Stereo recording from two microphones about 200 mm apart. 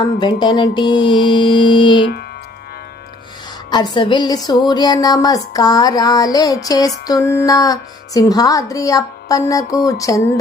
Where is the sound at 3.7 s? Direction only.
20° left (ahead or behind).